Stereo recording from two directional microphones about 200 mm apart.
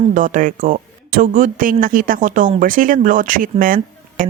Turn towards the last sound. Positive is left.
turn(degrees=-45)  # may be behind; listen again after turning